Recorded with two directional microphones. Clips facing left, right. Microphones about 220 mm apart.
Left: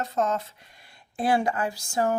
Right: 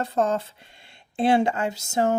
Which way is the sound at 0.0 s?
30° right (ahead or behind).